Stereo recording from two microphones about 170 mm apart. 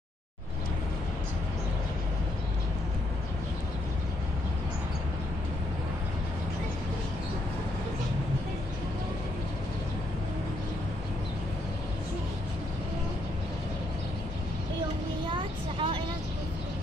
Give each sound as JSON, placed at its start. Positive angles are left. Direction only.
{"t": 15.2, "sound": "vehicle", "side_deg": -30}